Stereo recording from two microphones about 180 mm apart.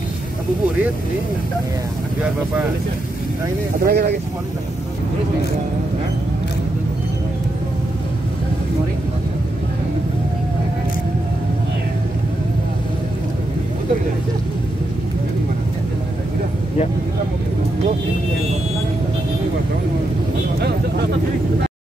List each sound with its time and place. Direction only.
3.8 s speech: 65° right (ahead or behind)